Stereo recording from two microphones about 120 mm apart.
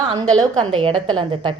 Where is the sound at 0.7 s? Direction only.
50° right (ahead or behind).